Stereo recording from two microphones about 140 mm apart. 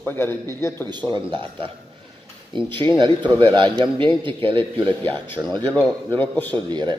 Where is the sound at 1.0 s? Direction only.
10° right (ahead or behind).